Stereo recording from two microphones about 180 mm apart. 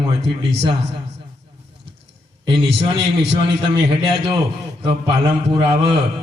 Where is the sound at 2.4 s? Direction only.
25° right (ahead or behind).